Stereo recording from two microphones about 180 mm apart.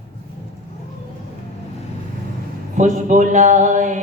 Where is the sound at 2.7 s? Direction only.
45° right (ahead or behind).